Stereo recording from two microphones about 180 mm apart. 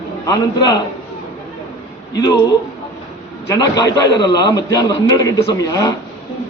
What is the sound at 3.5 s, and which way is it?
A man's voice, 20° left (ahead or behind).